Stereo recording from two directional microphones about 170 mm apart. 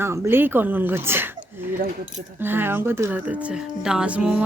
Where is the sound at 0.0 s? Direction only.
15° right (ahead or behind).